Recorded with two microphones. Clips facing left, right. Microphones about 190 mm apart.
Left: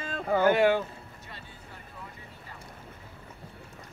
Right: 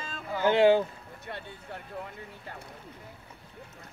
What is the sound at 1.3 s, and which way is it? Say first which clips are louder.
Music: right 7 dB; 60° right (ahead or behind).